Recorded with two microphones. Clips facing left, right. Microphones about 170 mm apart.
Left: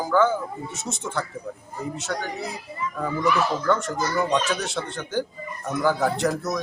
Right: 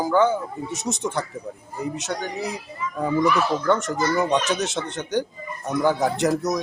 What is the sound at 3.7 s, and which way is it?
Speech, 20° right (ahead or behind).